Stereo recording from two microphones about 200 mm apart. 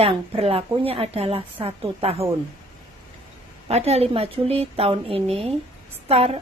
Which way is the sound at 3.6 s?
30° right (ahead or behind).